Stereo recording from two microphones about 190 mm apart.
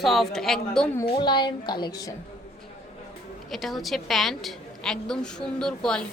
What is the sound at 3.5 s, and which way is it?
A woman's voice, centre (ahead or behind).